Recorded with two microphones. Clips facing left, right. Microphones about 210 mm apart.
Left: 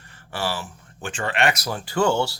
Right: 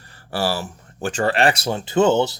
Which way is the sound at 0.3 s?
35° right (ahead or behind).